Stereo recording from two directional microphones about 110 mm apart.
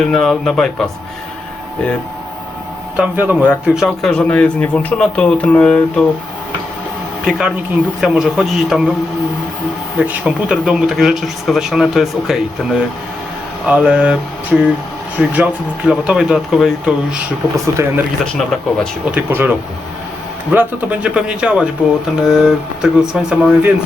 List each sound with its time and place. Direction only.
0.0 s speech: centre (ahead or behind)
2.9 s speech: 15° right (ahead or behind)
4.1 s speech: 10° left (ahead or behind)
7.3 s speech: 5° right (ahead or behind)
10.0 s speech: 10° right (ahead or behind)
17.8 s speech: 25° right (ahead or behind)
18.3 s speech: 5° left (ahead or behind)
19.1 s speech: 15° right (ahead or behind)